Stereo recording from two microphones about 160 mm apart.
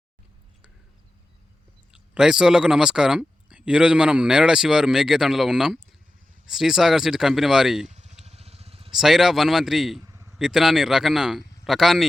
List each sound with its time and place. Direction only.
1.9 s speech: 5° right (ahead or behind)
7.9 s vehicle: 45° right (ahead or behind)
9.0 s speech: centre (ahead or behind)
10.0 s a sound: 20° right (ahead or behind)
10.3 s speech: centre (ahead or behind)